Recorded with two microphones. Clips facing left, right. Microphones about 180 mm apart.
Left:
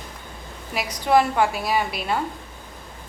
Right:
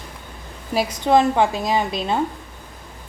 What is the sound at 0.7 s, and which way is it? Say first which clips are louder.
A woman's voice: right 3 dB; 25° right (ahead or behind).